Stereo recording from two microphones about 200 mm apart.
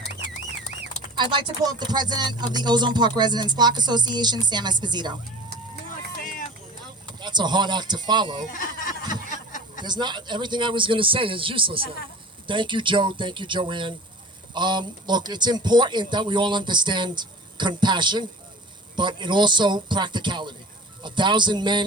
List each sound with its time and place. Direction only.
1.1 s speech: 25° right (ahead or behind)
7.2 s speech: 20° right (ahead or behind)
8.5 s a sound: 40° left (ahead or behind)
9.8 s speech: 20° right (ahead or behind)